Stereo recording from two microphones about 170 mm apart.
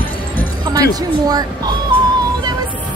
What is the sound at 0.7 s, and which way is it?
A woman's voice, 20° right (ahead or behind).